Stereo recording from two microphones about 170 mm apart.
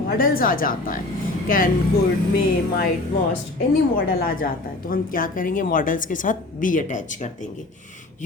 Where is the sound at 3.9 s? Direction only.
55° left (ahead or behind).